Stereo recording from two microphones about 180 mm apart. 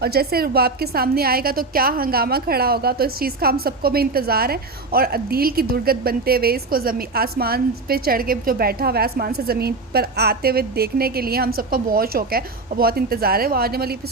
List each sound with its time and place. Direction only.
0.0 s a woman's voice: 60° right (ahead or behind)